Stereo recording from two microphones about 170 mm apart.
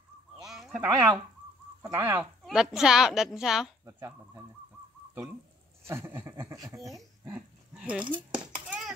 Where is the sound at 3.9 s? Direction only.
15° right (ahead or behind).